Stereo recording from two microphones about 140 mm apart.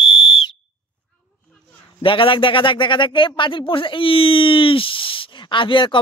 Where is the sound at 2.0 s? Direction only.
40° left (ahead or behind).